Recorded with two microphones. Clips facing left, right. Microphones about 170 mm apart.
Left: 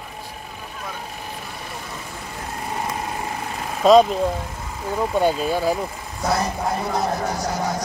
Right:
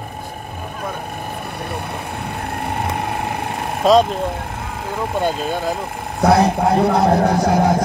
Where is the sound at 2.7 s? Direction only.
60° right (ahead or behind).